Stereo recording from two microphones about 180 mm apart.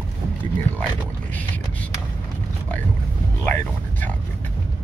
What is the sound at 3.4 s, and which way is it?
Speech, 10° left (ahead or behind).